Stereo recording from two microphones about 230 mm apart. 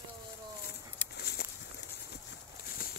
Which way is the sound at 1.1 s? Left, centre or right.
Left.